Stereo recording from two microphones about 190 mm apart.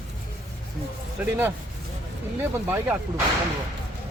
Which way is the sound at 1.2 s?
10° right (ahead or behind).